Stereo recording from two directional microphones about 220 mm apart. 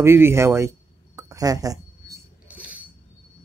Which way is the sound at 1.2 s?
15° right (ahead or behind).